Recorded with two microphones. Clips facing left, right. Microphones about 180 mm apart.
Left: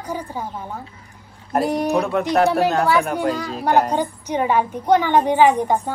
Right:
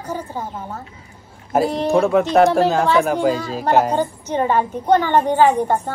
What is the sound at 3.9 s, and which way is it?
A woman's voice, 10° left (ahead or behind).